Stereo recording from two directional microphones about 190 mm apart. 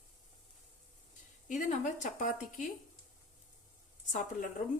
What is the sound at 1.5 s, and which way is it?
A woman's voice, 40° left (ahead or behind).